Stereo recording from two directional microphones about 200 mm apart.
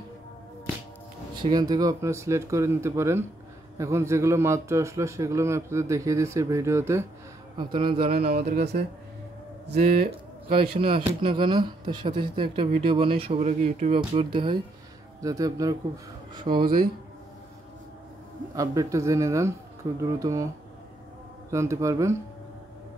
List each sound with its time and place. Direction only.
1.4 s a man's voice: 20° right (ahead or behind)
7.5 s speech: 25° right (ahead or behind)
8.1 s speech: 50° right (ahead or behind)
10.8 s a man's voice: 25° right (ahead or behind)
16.5 s speech: 45° right (ahead or behind)
18.5 s a man's voice: 15° right (ahead or behind)
21.5 s a man's voice: 15° right (ahead or behind)